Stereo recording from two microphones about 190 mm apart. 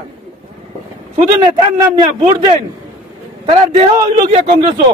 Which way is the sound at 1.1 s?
25° right (ahead or behind).